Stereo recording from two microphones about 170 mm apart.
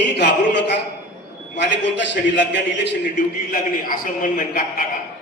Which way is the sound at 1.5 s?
90° left.